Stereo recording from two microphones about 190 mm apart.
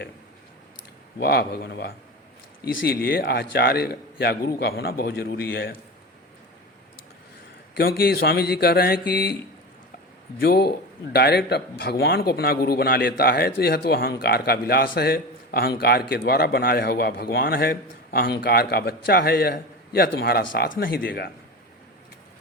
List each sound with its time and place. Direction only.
1.2 s a man's voice: 55° left (ahead or behind)
7.8 s a man's voice: 55° left (ahead or behind)
10.4 s a man's voice: 55° left (ahead or behind)